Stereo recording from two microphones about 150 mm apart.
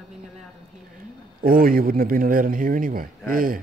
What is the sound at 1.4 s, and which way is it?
A man's voice, 75° right (ahead or behind).